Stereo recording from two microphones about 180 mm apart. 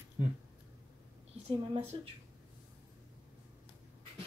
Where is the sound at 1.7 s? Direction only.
35° right (ahead or behind).